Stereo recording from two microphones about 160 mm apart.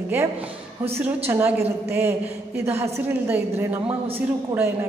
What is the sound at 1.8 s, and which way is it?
A woman's voice, 15° right (ahead or behind).